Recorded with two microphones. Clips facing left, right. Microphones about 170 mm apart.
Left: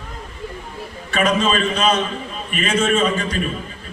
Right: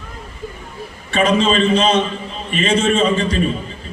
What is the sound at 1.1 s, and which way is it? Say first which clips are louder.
A man's voice: right 3 dB; 30° right (ahead or behind).